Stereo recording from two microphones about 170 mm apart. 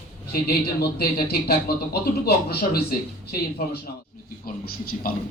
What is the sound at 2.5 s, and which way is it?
A man's voice, 65° left (ahead or behind).